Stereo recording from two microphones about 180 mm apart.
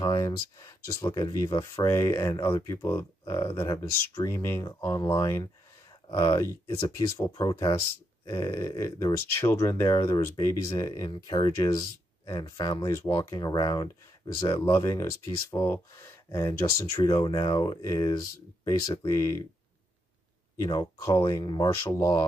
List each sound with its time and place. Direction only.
0.0 s speech: 20° left (ahead or behind)
20.6 s speech: 20° left (ahead or behind)